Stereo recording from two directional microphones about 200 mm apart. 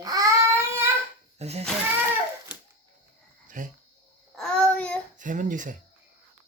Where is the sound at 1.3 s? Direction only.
30° right (ahead or behind).